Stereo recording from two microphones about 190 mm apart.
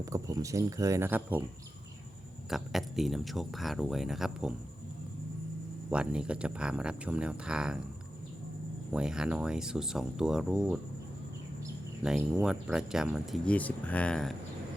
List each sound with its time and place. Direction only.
0.0 s speech: 15° right (ahead or behind)
2.5 s speech: centre (ahead or behind)
5.9 s speech: 5° right (ahead or behind)
8.9 s speech: 5° right (ahead or behind)
12.0 s speech: 5° right (ahead or behind)